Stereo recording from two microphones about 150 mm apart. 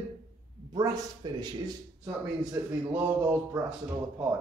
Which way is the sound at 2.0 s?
15° right (ahead or behind).